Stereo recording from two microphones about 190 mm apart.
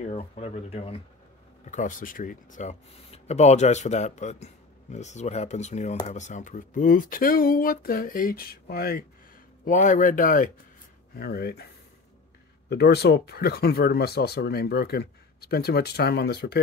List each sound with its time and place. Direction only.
0.0 s speech: 35° left (ahead or behind)
1.7 s speech: 45° left (ahead or behind)
9.7 s speech: 45° left (ahead or behind)